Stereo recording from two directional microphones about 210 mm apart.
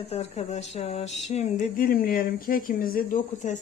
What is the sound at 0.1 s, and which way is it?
Speech, 30° left (ahead or behind).